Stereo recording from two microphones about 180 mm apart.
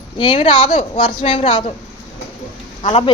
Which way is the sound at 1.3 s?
40° left (ahead or behind).